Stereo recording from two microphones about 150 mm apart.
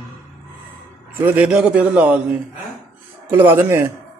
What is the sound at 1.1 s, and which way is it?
A man's voice, 10° right (ahead or behind).